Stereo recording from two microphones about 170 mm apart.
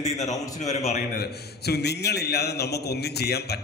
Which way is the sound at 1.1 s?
70° left (ahead or behind).